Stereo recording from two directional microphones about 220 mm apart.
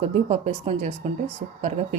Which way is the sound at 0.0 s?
30° right (ahead or behind).